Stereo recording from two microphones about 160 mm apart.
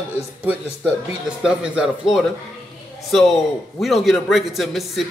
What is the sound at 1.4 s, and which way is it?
Speech, 5° right (ahead or behind).